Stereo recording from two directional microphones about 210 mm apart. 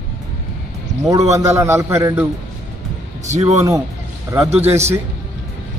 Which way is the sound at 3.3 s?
35° right (ahead or behind).